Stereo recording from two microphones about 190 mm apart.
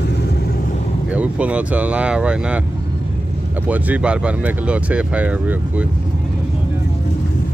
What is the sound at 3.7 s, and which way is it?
Speech, 10° right (ahead or behind).